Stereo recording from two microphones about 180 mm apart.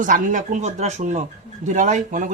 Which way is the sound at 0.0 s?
45° right (ahead or behind).